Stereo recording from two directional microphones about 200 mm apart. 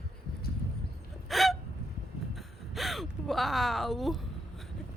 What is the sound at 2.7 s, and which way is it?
Speech, centre (ahead or behind).